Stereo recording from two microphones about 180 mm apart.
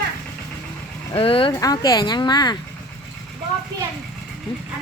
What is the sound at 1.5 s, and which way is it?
A woman's voice, 20° left (ahead or behind).